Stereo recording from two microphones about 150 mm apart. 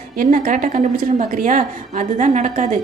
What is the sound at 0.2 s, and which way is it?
A woman's voice, 65° right (ahead or behind).